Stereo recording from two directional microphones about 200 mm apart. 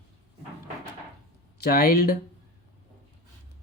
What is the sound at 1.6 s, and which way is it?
Speech, 50° left (ahead or behind).